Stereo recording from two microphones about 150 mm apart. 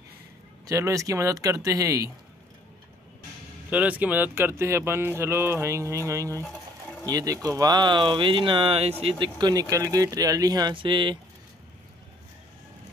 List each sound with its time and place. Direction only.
0.7 s speech: 20° right (ahead or behind)
3.7 s speech: 10° right (ahead or behind); by 11.1 s 30° right (ahead or behind)